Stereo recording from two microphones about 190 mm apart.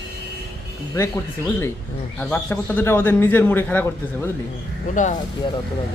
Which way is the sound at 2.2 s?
10° left (ahead or behind).